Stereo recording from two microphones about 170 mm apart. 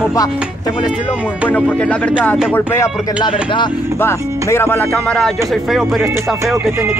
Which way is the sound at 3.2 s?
30° left (ahead or behind).